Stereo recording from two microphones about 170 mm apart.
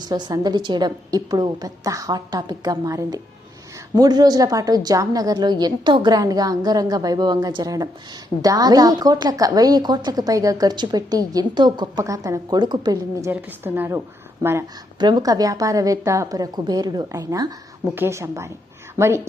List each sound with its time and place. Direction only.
0.0 s a woman's voice: 25° right (ahead or behind)
13.3 s a woman's voice: 10° right (ahead or behind)
14.9 s a woman's voice: 25° right (ahead or behind)